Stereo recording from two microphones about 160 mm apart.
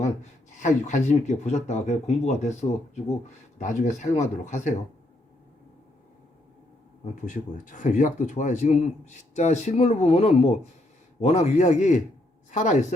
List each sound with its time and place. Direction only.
0.5 s speech: 50° left (ahead or behind)
7.0 s speech: 50° left (ahead or behind)